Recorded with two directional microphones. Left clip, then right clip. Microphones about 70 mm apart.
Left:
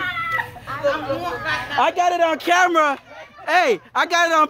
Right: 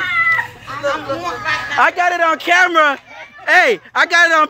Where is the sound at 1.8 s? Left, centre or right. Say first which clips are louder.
Right 4 dB; left.